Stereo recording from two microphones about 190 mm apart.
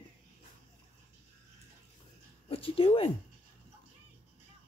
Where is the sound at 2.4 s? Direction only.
30° left (ahead or behind).